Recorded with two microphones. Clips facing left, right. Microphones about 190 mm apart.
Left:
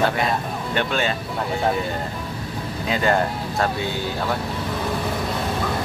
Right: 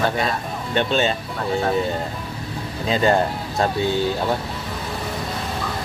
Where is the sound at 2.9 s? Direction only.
20° right (ahead or behind).